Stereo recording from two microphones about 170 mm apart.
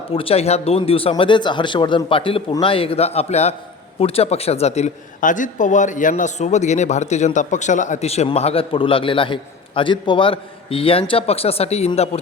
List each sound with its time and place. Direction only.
0.1 s a man's voice: 35° left (ahead or behind)